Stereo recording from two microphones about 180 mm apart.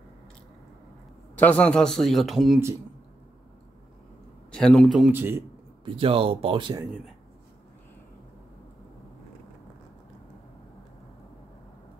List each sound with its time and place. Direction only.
1.4 s a man's voice: 10° left (ahead or behind)
4.5 s a man's voice: 5° left (ahead or behind)
5.1 s a man's voice: 10° right (ahead or behind)
5.9 s speech: 30° right (ahead or behind)